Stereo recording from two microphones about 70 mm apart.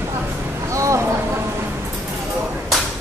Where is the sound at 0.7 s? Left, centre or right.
Right.